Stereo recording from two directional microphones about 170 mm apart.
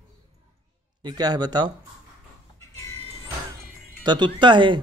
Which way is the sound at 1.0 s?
25° right (ahead or behind).